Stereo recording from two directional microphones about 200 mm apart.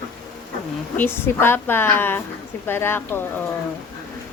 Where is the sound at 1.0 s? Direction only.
10° left (ahead or behind).